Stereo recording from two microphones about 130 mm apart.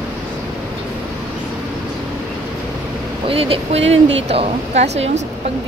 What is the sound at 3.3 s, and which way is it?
Speech, 50° right (ahead or behind).